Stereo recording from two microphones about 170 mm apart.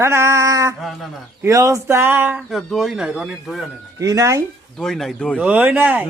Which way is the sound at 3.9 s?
20° right (ahead or behind).